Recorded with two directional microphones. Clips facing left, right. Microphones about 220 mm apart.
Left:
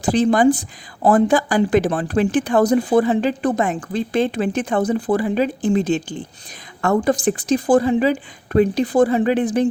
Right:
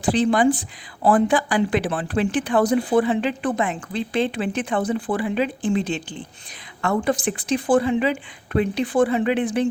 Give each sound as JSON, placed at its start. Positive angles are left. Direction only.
{"t": 0.0, "sound": "speech", "side_deg": 40}